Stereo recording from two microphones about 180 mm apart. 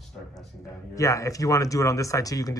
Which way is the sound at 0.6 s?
15° left (ahead or behind).